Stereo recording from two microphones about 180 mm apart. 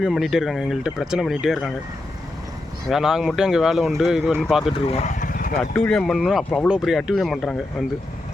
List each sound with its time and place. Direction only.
0.0 s speech: centre (ahead or behind)
2.9 s speech: centre (ahead or behind)
4.9 s vehicle: 40° left (ahead or behind)
5.7 s speech: 5° left (ahead or behind)